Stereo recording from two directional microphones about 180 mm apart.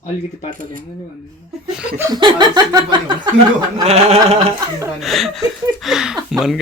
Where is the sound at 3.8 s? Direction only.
35° right (ahead or behind).